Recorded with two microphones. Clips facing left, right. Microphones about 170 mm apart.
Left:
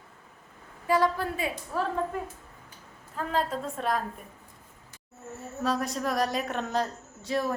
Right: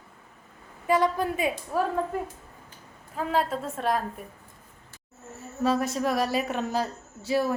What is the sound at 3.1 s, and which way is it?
Speech, 10° right (ahead or behind).